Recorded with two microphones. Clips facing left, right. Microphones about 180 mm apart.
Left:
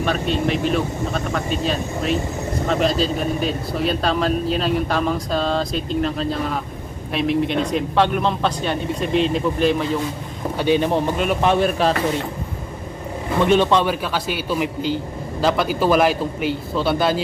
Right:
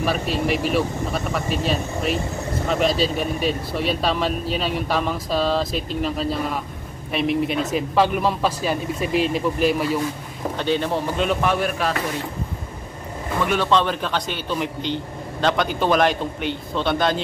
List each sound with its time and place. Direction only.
0.0 s speech: 5° right (ahead or behind)
10.6 s a man's voice: 15° left (ahead or behind)
11.4 s speech: 25° left (ahead or behind)
13.4 s a man's voice: 20° left (ahead or behind); by 17.2 s 5° left (ahead or behind)